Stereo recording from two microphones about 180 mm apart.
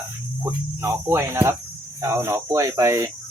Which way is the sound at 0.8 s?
15° right (ahead or behind).